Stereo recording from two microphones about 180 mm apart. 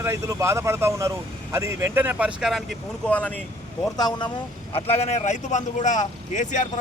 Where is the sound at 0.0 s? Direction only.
15° right (ahead or behind); by 3.4 s 10° left (ahead or behind).